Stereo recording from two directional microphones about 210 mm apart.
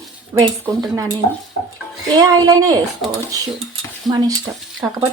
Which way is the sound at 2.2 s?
15° right (ahead or behind).